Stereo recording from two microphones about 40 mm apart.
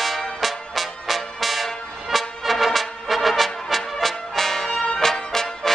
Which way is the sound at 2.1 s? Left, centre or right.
Centre.